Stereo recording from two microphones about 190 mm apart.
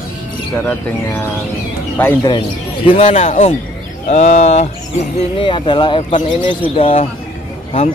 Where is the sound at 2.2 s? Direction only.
25° left (ahead or behind).